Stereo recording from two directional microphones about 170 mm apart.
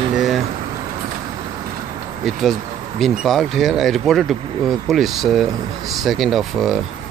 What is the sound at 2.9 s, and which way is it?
Speech, centre (ahead or behind).